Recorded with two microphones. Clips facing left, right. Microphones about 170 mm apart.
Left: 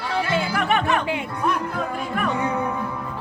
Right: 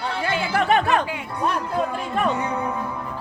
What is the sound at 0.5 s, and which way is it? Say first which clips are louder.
Music: right 5 dB; 35° right (ahead or behind).